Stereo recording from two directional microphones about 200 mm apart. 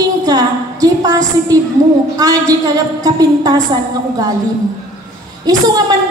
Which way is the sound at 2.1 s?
15° right (ahead or behind).